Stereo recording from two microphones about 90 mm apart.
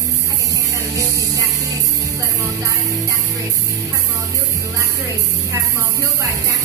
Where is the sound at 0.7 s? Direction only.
35° right (ahead or behind).